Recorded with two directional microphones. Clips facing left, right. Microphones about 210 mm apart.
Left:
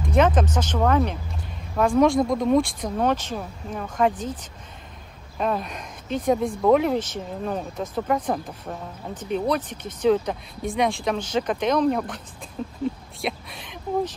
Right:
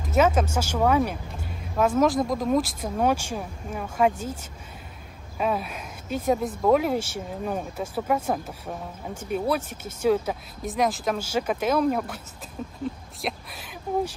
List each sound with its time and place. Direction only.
0.0 s speech: 5° right (ahead or behind)
5.4 s speech: 5° right (ahead or behind)